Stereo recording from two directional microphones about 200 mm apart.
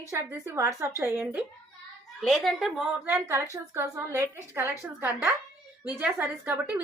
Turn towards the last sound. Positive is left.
turn(degrees=-10)  # may be behind; listen again after turning